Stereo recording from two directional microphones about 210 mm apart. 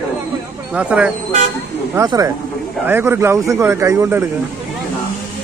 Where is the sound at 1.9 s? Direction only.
15° right (ahead or behind).